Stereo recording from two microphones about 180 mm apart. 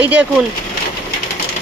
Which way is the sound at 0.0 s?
5° right (ahead or behind).